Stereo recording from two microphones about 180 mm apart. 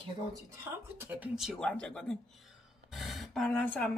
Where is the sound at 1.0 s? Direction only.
10° right (ahead or behind).